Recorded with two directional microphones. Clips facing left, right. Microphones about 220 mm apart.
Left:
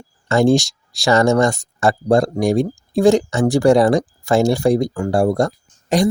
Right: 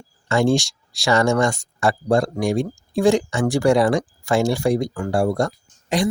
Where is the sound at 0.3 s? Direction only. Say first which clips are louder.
Left 4 dB; 40° left (ahead or behind).